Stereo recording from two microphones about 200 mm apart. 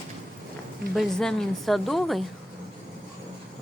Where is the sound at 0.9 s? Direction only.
5° left (ahead or behind).